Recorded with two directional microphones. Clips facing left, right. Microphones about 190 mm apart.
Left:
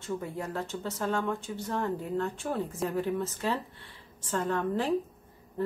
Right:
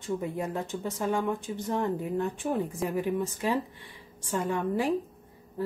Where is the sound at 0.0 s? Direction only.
15° right (ahead or behind).